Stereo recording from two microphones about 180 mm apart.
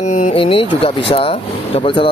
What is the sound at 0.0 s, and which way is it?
Speech, 40° left (ahead or behind).